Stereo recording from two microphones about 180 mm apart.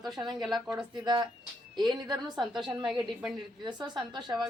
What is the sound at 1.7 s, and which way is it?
Speech, 25° right (ahead or behind).